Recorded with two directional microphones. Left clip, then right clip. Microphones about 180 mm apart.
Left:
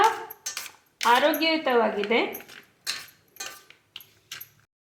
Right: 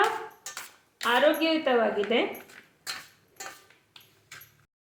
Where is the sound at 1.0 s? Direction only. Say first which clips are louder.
Left 2 dB; 50° left (ahead or behind).